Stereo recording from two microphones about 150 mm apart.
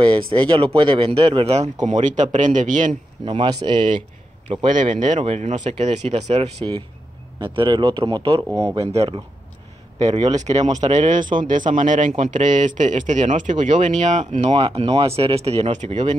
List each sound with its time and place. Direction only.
0.0 s speech: 35° right (ahead or behind)
1.9 s a man's voice: 55° right (ahead or behind)
3.3 s speech: 30° right (ahead or behind)
4.9 s a man's voice: 50° right (ahead or behind)
14.5 s speech: 35° right (ahead or behind)